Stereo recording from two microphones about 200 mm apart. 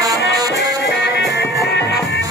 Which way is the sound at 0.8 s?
60° left (ahead or behind).